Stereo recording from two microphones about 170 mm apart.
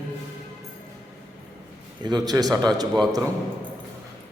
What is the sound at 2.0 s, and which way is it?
Speech, 25° right (ahead or behind).